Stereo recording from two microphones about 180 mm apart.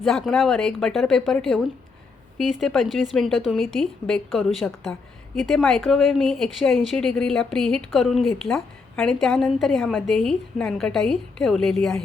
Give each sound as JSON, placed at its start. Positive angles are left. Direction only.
{"t": 0.0, "sound": "a woman's voice", "side_deg": 5}